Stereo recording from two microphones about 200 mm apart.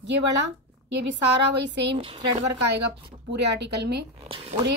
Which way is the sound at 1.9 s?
25° right (ahead or behind).